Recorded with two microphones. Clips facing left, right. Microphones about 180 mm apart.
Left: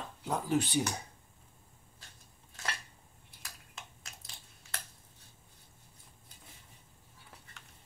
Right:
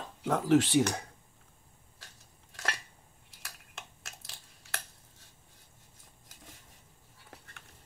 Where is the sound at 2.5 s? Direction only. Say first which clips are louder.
Right 3 dB; 70° right (ahead or behind).